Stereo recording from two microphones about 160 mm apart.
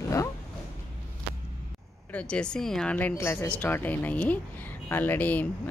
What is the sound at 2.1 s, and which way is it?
Speech, 5° left (ahead or behind).